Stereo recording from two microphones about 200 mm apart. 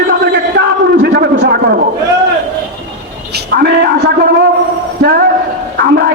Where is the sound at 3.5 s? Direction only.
50° right (ahead or behind).